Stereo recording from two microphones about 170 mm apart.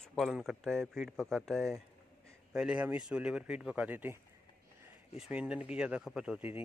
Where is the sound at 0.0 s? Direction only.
Centre (ahead or behind).